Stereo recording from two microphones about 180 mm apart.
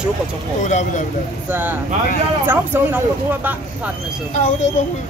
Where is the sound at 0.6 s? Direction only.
40° left (ahead or behind).